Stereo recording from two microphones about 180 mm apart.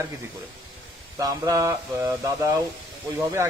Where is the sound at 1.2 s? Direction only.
15° right (ahead or behind).